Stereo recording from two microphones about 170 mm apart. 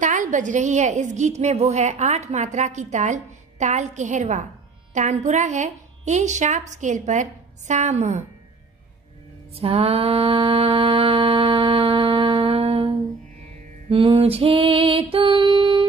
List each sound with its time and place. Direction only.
0.0 s a woman's voice: 50° right (ahead or behind)
9.5 s mantra: 35° right (ahead or behind)
13.8 s music: 35° right (ahead or behind)